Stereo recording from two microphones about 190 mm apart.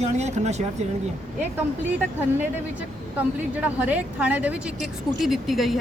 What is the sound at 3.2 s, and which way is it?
A woman's voice, 10° right (ahead or behind).